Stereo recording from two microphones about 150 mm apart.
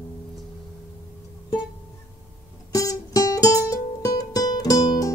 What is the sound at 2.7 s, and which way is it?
Music, 20° left (ahead or behind).